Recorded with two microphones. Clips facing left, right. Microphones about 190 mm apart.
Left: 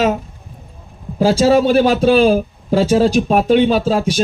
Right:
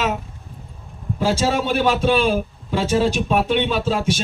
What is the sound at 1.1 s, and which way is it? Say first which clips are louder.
A man's voice: left 8 dB; 40° left (ahead or behind).